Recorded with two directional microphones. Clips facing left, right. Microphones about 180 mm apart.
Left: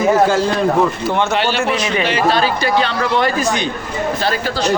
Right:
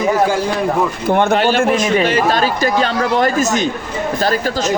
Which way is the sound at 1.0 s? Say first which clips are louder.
Right 3 dB; 55° right (ahead or behind).